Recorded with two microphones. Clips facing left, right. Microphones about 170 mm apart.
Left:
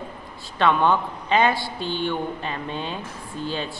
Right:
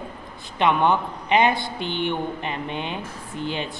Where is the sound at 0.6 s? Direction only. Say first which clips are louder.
Even; 15° right (ahead or behind).